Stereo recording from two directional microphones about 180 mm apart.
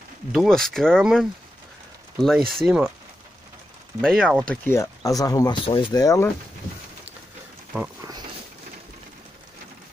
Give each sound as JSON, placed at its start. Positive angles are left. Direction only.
{"t": 0.3, "sound": "speech", "side_deg": 0}
{"t": 4.0, "sound": "speech", "side_deg": 0}
{"t": 4.6, "sound": "speech", "side_deg": 15}